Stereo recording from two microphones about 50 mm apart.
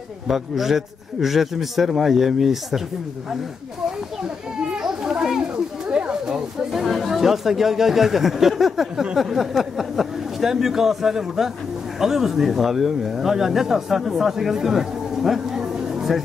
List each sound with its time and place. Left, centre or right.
0.3 s a man's voice: centre
4.6 s children playing: centre
5.9 s a sound: centre
6.7 s a man's voice: centre